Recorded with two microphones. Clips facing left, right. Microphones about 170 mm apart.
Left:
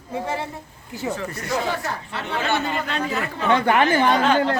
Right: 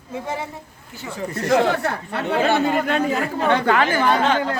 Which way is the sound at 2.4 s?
40° right (ahead or behind).